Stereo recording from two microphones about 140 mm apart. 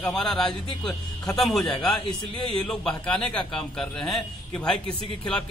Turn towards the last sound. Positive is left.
turn(degrees=5)  # may be behind; listen again after turning